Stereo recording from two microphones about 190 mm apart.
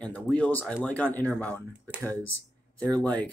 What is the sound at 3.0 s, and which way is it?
Speech, 5° left (ahead or behind).